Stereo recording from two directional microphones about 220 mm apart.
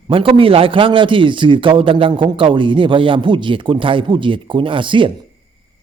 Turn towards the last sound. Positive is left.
turn(degrees=-20)  # may be behind; listen again after turning